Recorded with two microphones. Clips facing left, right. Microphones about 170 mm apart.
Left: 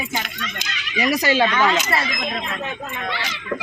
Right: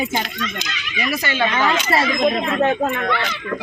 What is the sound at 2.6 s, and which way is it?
Speech, 55° right (ahead or behind).